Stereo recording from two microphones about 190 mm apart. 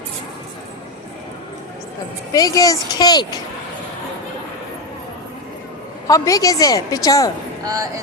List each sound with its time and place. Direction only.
2.3 s speech: 20° left (ahead or behind)
6.1 s a woman's voice: 15° left (ahead or behind)
7.6 s speech: 20° right (ahead or behind)